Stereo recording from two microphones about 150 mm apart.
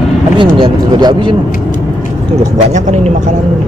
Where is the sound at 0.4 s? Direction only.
30° right (ahead or behind).